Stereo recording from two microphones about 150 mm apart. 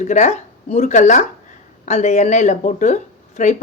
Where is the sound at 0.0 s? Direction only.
50° left (ahead or behind).